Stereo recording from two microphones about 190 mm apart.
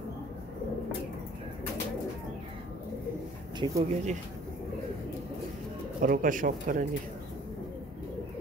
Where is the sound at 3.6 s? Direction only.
15° right (ahead or behind).